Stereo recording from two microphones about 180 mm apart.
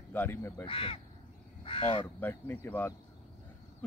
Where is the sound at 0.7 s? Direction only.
30° left (ahead or behind).